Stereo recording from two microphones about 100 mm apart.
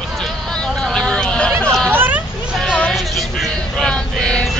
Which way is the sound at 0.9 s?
10° left (ahead or behind).